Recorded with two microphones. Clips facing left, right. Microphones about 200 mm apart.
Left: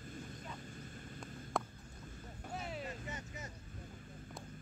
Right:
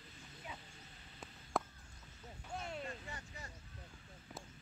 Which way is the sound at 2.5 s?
5° left (ahead or behind).